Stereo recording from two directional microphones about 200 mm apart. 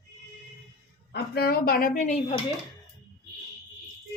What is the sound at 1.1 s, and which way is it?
A woman's voice, 55° left (ahead or behind).